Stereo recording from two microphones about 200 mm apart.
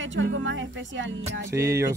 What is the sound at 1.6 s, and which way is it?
Speech, 15° right (ahead or behind).